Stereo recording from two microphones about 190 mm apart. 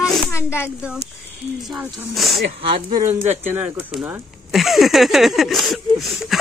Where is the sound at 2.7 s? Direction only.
20° right (ahead or behind).